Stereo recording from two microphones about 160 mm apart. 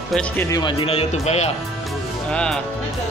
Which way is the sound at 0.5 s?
25° left (ahead or behind).